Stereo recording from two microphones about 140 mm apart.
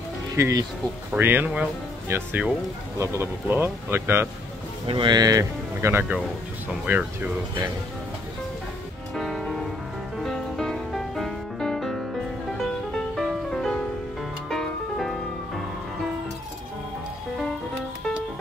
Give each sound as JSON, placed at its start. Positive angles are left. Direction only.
{"t": 0.4, "sound": "speech", "side_deg": -25}
{"t": 1.1, "sound": "speech", "side_deg": -15}
{"t": 4.8, "sound": "speech", "side_deg": -35}
{"t": 9.1, "sound": "music", "side_deg": 0}